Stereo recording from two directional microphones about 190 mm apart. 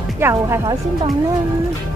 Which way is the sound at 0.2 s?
15° right (ahead or behind).